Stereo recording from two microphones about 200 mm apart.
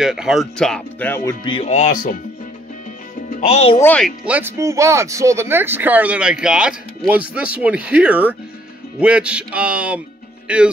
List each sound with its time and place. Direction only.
0.0 s speech: 5° right (ahead or behind)
1.4 s speech: 30° left (ahead or behind)
3.3 s speech: 35° left (ahead or behind)
3.8 s speech: 5° left (ahead or behind)
4.3 s speech: 10° right (ahead or behind)